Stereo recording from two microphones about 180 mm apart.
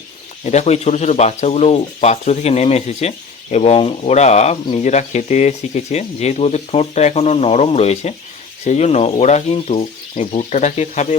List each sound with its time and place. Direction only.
0.4 s speech: 40° left (ahead or behind)